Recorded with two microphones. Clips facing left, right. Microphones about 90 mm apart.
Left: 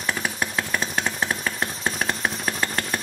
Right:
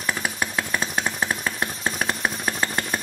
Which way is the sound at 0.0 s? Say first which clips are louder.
Even; 5° right (ahead or behind).